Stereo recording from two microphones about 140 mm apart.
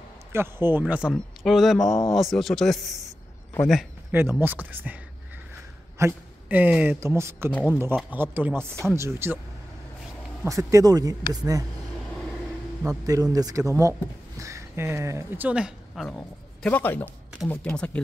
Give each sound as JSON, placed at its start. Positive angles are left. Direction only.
{"t": 0.3, "sound": "a man's voice", "side_deg": -15}
{"t": 4.1, "sound": "speech", "side_deg": -15}
{"t": 5.9, "sound": "speech", "side_deg": -15}
{"t": 10.4, "sound": "speech", "side_deg": -20}
{"t": 13.0, "sound": "speech", "side_deg": -25}
{"t": 16.1, "sound": "a man's voice", "side_deg": 10}